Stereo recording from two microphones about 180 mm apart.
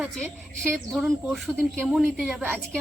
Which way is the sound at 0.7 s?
Centre (ahead or behind).